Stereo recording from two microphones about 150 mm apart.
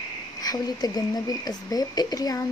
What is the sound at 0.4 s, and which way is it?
Speech, 25° left (ahead or behind).